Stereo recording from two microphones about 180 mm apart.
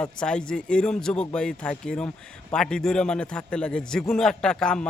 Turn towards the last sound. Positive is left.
turn(degrees=5)  # may be behind; listen again after turning